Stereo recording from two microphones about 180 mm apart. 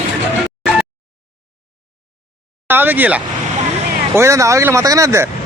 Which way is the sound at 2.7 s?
10° right (ahead or behind).